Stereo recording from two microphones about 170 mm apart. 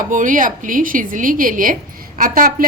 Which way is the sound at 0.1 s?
50° right (ahead or behind).